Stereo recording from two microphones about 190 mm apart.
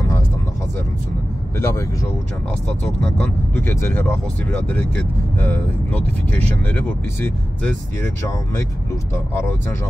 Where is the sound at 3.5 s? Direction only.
15° left (ahead or behind).